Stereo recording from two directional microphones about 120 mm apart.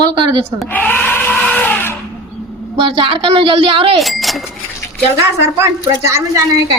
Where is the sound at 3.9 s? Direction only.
Centre (ahead or behind).